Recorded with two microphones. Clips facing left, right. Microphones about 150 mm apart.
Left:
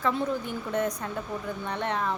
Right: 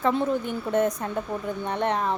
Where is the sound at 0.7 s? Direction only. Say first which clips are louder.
Right 5 dB; 25° right (ahead or behind).